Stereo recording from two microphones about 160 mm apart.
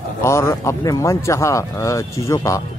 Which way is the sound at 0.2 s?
20° left (ahead or behind).